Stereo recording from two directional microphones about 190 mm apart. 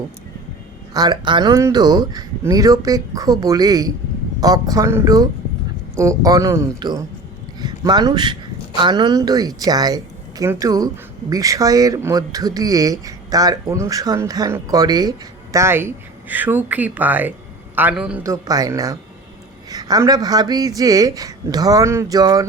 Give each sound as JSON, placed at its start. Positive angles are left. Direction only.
{"t": 0.9, "sound": "speech", "side_deg": -20}
{"t": 18.2, "sound": "speech", "side_deg": -15}